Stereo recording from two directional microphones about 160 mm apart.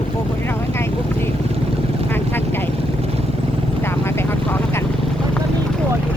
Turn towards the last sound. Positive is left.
turn(degrees=15)  # may be behind; listen again after turning